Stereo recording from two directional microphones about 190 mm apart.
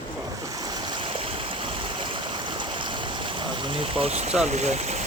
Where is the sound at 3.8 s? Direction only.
30° right (ahead or behind).